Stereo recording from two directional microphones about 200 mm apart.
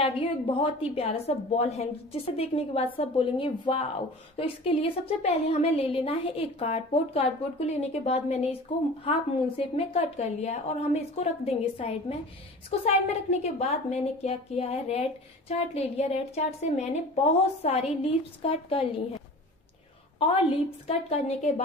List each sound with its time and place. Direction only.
0.6 s a woman's voice: 25° left (ahead or behind)
9.8 s a woman's voice: 30° left (ahead or behind)
20.2 s a woman's voice: 30° left (ahead or behind)